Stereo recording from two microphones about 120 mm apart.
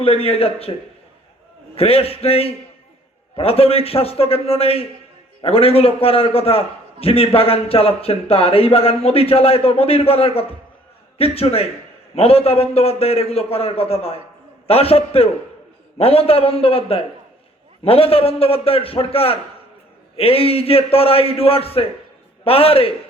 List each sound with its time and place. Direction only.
0.0 s a man's voice: 55° left (ahead or behind)